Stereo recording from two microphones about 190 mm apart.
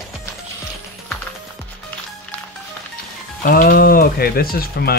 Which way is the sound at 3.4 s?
50° left (ahead or behind).